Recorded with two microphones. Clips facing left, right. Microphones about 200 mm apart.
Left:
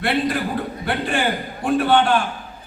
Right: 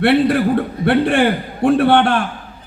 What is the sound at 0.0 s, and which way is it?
A man's voice, 65° right (ahead or behind).